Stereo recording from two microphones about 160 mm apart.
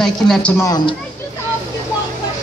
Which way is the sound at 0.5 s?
25° left (ahead or behind).